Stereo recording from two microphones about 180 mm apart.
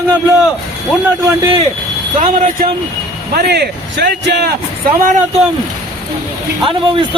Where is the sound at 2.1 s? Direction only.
45° right (ahead or behind).